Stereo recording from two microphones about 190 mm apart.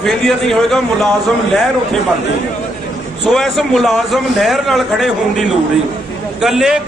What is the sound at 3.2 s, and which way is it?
Speech, centre (ahead or behind).